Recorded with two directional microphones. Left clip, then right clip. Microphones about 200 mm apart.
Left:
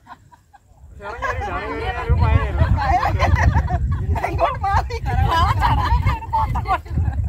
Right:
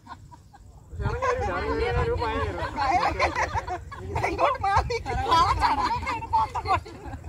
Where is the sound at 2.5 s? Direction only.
5° left (ahead or behind).